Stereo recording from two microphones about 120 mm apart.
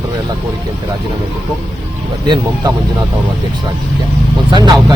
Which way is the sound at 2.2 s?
40° right (ahead or behind).